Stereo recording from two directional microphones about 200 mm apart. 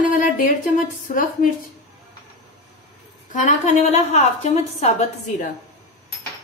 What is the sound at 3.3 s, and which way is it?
A woman's voice, 35° left (ahead or behind).